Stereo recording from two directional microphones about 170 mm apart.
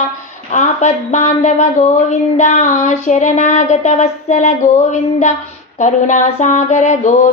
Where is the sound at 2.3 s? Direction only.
45° left (ahead or behind).